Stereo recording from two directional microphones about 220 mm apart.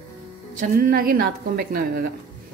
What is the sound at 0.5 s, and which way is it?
A woman's voice, 40° right (ahead or behind).